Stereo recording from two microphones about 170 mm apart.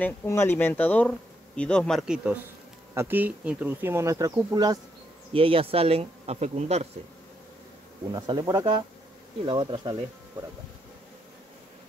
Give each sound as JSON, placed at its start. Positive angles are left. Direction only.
{"t": 0.0, "sound": "speech", "side_deg": 15}
{"t": 5.3, "sound": "speech", "side_deg": -35}
{"t": 8.1, "sound": "speech", "side_deg": -25}